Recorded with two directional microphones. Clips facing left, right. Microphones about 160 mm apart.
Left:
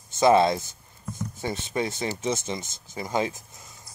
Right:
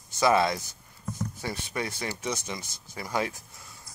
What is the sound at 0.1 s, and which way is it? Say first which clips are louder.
Speech: left 5 dB; 25° left (ahead or behind).